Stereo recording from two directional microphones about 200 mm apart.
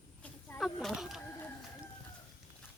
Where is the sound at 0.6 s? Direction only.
Centre (ahead or behind).